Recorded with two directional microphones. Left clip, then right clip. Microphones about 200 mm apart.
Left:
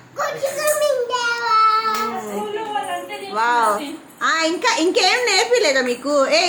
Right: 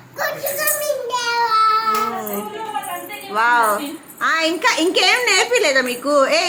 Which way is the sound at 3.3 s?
15° right (ahead or behind).